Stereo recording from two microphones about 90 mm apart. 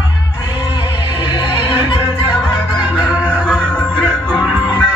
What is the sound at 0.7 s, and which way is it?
Music, 60° left (ahead or behind).